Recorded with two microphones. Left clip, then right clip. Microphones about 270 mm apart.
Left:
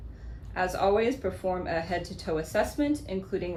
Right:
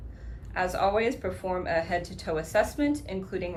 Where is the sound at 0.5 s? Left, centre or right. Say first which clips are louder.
Even; right.